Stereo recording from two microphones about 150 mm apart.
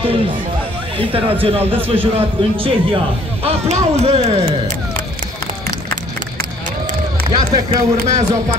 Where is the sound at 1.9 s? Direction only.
35° right (ahead or behind).